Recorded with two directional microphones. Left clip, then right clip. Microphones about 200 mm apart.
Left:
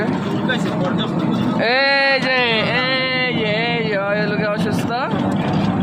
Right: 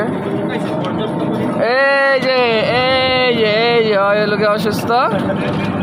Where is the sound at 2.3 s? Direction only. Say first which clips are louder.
Right 3 dB; 15° right (ahead or behind).